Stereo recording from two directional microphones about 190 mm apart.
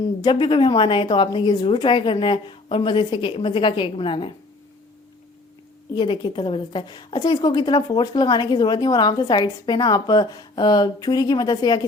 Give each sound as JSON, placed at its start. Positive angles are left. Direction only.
{"t": 0.2, "sound": "a woman's voice", "side_deg": 25}
{"t": 5.9, "sound": "a woman's voice", "side_deg": 25}